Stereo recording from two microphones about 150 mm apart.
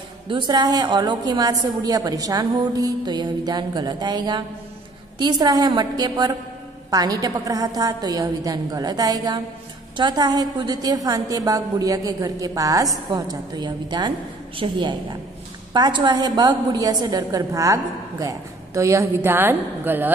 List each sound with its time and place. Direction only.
0.3 s a woman's voice: 25° right (ahead or behind)